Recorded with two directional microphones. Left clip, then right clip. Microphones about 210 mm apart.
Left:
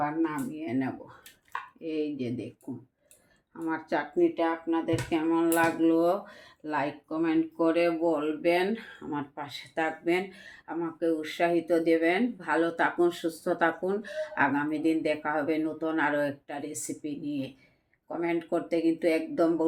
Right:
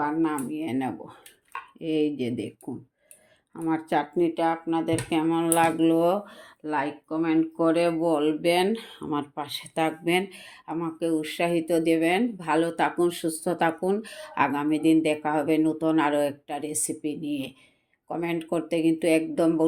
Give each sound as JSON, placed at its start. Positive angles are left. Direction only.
{"t": 0.0, "sound": "speech", "side_deg": -50}
{"t": 3.6, "sound": "speech", "side_deg": -45}